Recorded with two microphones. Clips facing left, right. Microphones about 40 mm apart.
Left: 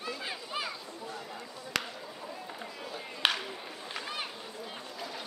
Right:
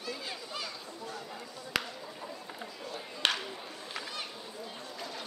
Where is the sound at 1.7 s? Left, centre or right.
Centre.